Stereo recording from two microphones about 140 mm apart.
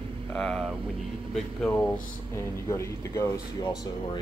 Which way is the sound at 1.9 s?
20° left (ahead or behind).